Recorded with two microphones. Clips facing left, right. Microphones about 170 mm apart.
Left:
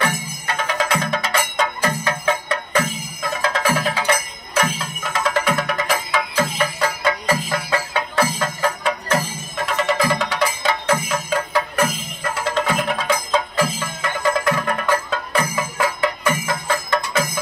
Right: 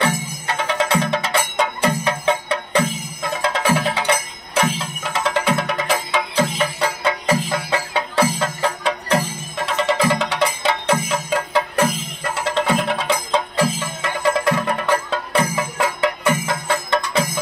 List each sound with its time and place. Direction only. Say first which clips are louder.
0.0 s music: right 2 dB; 25° right (ahead or behind)